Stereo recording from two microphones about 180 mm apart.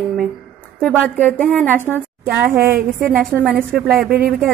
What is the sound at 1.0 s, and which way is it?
A woman's voice, 5° left (ahead or behind).